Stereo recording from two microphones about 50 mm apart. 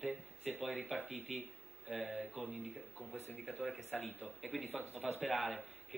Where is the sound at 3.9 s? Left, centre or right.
Centre.